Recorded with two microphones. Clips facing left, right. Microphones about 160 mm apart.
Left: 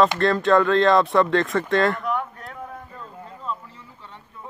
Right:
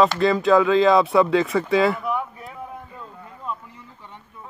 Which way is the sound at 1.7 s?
5° right (ahead or behind).